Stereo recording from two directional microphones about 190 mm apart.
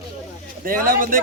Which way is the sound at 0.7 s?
45° right (ahead or behind).